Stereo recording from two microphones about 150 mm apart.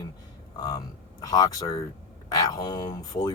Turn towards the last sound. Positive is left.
turn(degrees=25)  # may be behind; listen again after turning